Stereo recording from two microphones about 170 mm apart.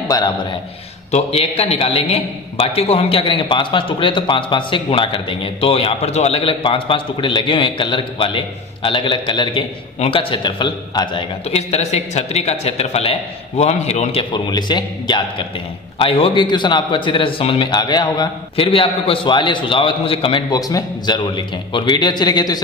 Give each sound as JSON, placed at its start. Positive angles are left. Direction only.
{"t": 0.1, "sound": "a man's voice", "side_deg": 25}
{"t": 1.1, "sound": "a man's voice", "side_deg": 35}